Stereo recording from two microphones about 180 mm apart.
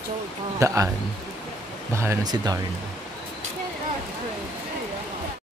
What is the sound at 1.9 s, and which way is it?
Speech, 20° right (ahead or behind).